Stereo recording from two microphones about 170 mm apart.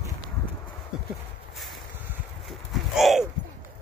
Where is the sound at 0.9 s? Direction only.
5° right (ahead or behind).